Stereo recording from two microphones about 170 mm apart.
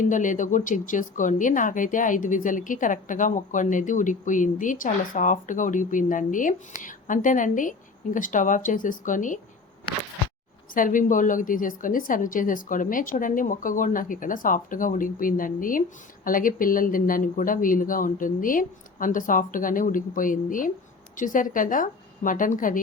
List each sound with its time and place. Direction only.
0.0 s speech: 50° left (ahead or behind)
10.8 s speech: 50° left (ahead or behind)